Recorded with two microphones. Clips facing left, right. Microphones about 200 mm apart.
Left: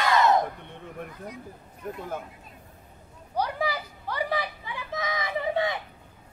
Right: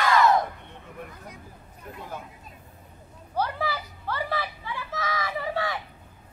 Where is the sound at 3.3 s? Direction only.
15° left (ahead or behind).